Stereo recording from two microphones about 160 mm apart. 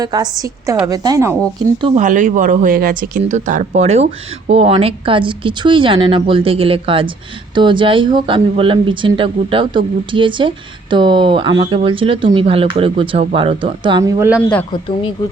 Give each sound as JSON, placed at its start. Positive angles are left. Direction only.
{"t": 0.0, "sound": "a woman's voice", "side_deg": -25}
{"t": 2.0, "sound": "speech", "side_deg": -50}
{"t": 14.0, "sound": "speech", "side_deg": -20}